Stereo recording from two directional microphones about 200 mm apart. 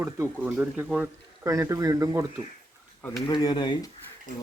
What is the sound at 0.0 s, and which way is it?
Speech, 10° right (ahead or behind).